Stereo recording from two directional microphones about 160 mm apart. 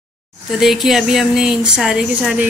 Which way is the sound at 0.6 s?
Centre (ahead or behind).